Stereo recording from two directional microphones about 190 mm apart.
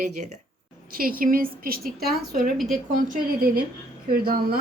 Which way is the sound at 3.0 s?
50° right (ahead or behind).